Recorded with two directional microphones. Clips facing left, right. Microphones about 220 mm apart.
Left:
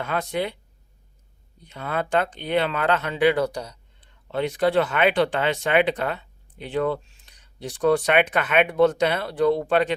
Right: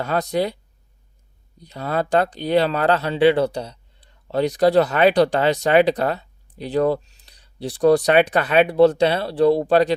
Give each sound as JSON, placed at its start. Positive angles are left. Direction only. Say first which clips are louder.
{"t": 0.0, "sound": "speech", "louder": "right 5 dB", "side_deg": -40}
{"t": 1.5, "sound": "speech", "louder": "right 4 dB", "side_deg": -35}